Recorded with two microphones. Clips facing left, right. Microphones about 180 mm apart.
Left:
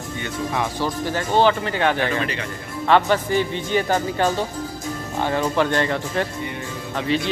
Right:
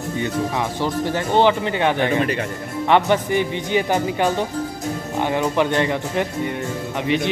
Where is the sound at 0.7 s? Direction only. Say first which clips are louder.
Right 2 dB; 20° right (ahead or behind).